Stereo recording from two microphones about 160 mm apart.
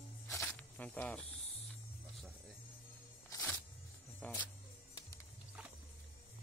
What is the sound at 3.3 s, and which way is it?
Music, 20° left (ahead or behind).